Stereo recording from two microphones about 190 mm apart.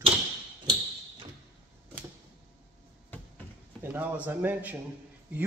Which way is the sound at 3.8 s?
10° right (ahead or behind).